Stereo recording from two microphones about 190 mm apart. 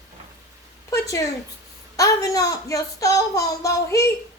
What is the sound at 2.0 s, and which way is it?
Speech, 20° left (ahead or behind).